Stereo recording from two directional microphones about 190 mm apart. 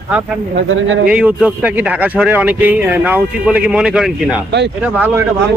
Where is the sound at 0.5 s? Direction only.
90° right.